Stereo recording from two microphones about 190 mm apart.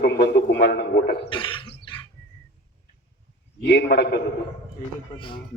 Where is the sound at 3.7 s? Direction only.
60° left (ahead or behind).